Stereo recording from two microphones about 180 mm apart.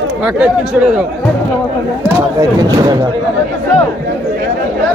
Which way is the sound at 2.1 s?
20° right (ahead or behind).